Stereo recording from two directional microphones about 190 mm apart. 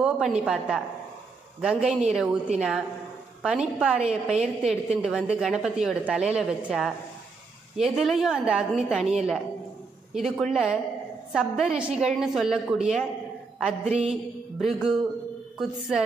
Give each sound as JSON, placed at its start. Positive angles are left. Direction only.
{"t": 0.0, "sound": "a woman's voice", "side_deg": -5}
{"t": 13.8, "sound": "a sound", "side_deg": -35}
{"t": 14.6, "sound": "a woman's voice", "side_deg": 0}